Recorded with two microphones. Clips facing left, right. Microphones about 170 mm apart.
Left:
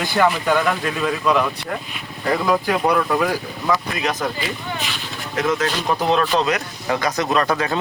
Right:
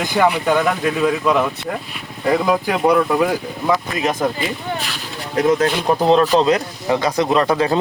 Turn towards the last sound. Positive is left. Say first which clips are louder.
# right 4 dB
turn(degrees=-25)  # may be behind; listen again after turning